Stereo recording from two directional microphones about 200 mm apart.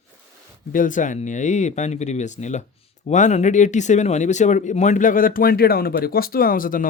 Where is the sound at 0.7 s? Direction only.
40° left (ahead or behind).